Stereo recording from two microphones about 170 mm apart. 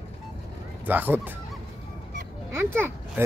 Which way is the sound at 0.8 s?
10° right (ahead or behind).